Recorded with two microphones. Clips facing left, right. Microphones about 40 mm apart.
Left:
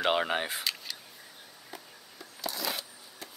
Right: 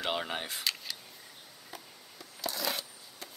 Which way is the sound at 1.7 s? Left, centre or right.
Centre.